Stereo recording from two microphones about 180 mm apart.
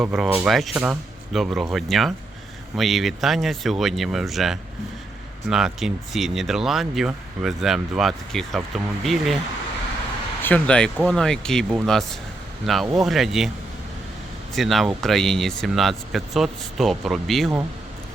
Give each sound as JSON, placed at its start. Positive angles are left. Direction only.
{"t": 0.1, "sound": "speech", "side_deg": 0}
{"t": 10.4, "sound": "speech", "side_deg": 5}
{"t": 14.5, "sound": "speech", "side_deg": 0}